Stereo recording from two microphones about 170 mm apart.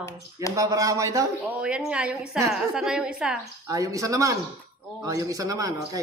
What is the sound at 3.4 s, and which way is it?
A man's voice, 20° right (ahead or behind).